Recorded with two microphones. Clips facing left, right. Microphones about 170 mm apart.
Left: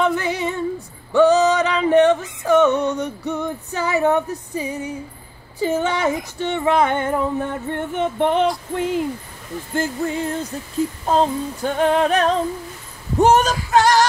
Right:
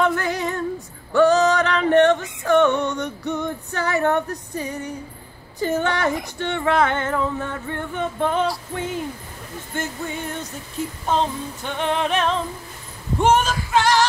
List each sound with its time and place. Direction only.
0.0 s female singing: 5° left (ahead or behind)
1.1 s music: 5° left (ahead or behind)
2.7 s female singing: 35° left (ahead or behind)
3.0 s female singing: 5° left (ahead or behind); by 8.4 s 20° left (ahead or behind)
9.8 s female singing: 30° left (ahead or behind)